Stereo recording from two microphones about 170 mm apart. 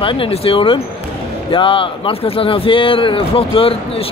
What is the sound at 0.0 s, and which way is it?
Speech, 30° left (ahead or behind).